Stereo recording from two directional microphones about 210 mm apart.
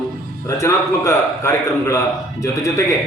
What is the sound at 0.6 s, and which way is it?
A man's voice, 15° left (ahead or behind).